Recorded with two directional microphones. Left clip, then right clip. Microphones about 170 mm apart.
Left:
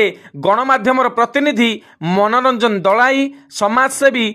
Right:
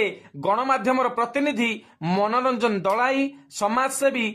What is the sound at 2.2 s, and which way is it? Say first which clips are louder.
Speech: left 8 dB; 35° left (ahead or behind).